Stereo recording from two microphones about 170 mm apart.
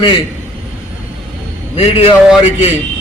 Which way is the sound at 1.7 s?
35° left (ahead or behind).